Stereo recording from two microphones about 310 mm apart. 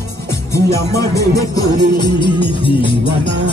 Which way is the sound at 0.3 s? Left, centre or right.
Centre.